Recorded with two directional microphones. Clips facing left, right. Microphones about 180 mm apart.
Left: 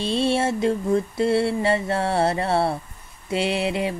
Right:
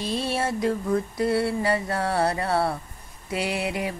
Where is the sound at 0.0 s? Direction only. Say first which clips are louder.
Left 5 dB; 25° left (ahead or behind).